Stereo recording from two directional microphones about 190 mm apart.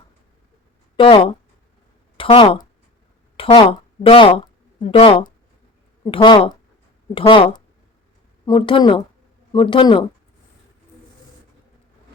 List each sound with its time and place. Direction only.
0.9 s speech: 25° left (ahead or behind)